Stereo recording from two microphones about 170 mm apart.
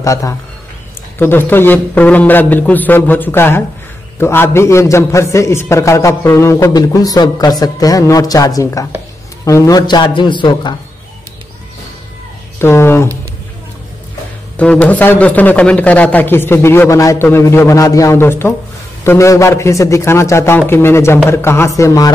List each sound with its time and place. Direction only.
0.0 s a man's voice: 20° left (ahead or behind)
12.5 s a man's voice: 15° left (ahead or behind)
14.6 s a man's voice: 10° left (ahead or behind)